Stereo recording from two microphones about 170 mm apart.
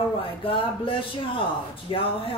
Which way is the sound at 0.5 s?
30° left (ahead or behind).